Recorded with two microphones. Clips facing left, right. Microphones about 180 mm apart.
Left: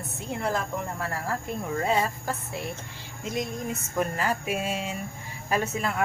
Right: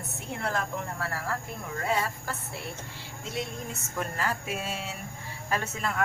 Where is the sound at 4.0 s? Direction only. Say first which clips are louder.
Left 4 dB; 15° left (ahead or behind).